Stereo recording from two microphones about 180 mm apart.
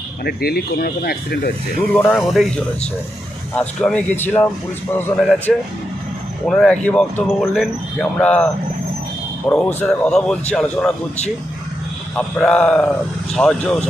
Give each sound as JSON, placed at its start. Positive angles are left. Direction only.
{"t": 0.3, "sound": "speech", "side_deg": 60}
{"t": 1.9, "sound": "speech", "side_deg": 5}
{"t": 3.5, "sound": "speech", "side_deg": 5}
{"t": 5.5, "sound": "speech", "side_deg": 5}
{"t": 9.5, "sound": "speech", "side_deg": 5}
{"t": 12.1, "sound": "speech", "side_deg": 5}